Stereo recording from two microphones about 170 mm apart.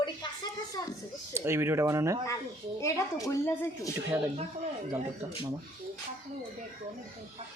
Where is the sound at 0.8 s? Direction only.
25° left (ahead or behind).